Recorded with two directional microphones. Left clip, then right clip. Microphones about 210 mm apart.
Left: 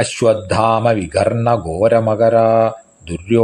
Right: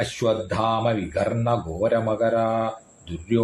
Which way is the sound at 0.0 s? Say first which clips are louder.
Left 9 dB; 40° left (ahead or behind).